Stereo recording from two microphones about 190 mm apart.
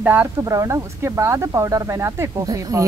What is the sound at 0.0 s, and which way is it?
Speech, 10° right (ahead or behind).